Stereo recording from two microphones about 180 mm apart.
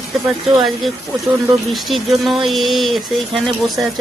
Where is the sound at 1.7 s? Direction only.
Centre (ahead or behind).